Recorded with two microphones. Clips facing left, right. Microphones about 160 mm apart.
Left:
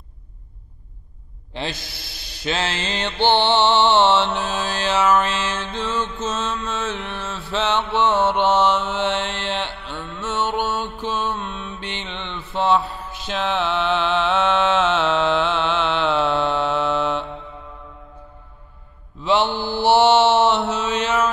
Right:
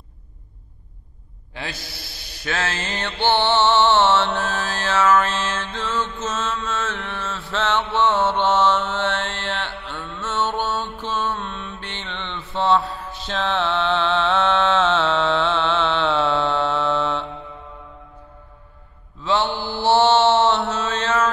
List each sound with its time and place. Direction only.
1.5 s mantra: 25° left (ahead or behind)
13.3 s music: 10° left (ahead or behind)
19.2 s mantra: 15° left (ahead or behind)